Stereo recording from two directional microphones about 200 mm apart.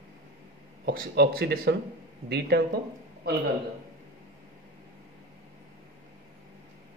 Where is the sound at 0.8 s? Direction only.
55° right (ahead or behind).